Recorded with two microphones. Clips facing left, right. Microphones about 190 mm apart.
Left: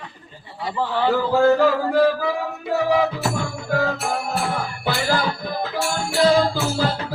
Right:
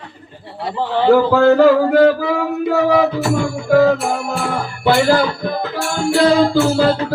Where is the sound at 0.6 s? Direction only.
70° right (ahead or behind).